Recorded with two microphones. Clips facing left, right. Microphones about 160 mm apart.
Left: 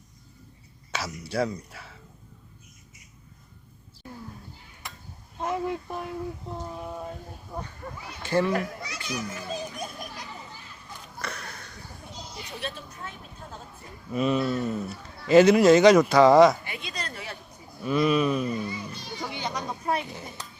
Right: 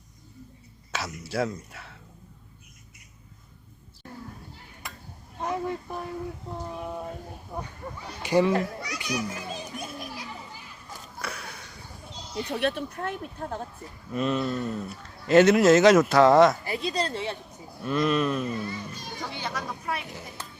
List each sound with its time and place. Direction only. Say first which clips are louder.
0.9 s speech: even; centre (ahead or behind)
5.4 s a sound: left 1 dB; 5° left (ahead or behind)
8.2 s a child's voice: right 2 dB; 15° right (ahead or behind)
11.2 s a sound: even; 10° right (ahead or behind)
12.3 s speech: right 11 dB; 65° right (ahead or behind)
14.1 s speech: left 2 dB; centre (ahead or behind)
16.6 s speech: right 8 dB; 35° right (ahead or behind)
17.8 s speech: left 2 dB; centre (ahead or behind)
18.5 s speech: left 1 dB; 15° left (ahead or behind)
19.8 s speech: left 7 dB; 35° left (ahead or behind)